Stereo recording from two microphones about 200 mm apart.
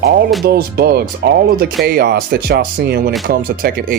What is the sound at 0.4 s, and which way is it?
Speech, 50° right (ahead or behind).